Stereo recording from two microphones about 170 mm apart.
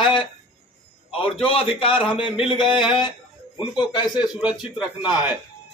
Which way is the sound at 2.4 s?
30° left (ahead or behind).